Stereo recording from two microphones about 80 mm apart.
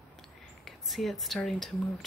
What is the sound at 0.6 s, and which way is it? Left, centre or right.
A woman's voice, centre.